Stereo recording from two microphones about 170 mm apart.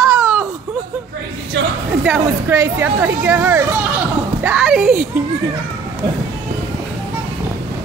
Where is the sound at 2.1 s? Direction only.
15° right (ahead or behind).